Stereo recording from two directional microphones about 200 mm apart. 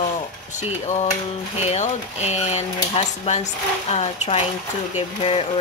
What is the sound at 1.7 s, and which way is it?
Speech, 35° left (ahead or behind).